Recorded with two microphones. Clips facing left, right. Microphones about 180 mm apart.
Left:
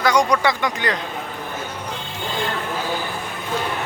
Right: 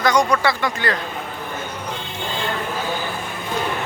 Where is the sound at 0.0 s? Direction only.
10° left (ahead or behind).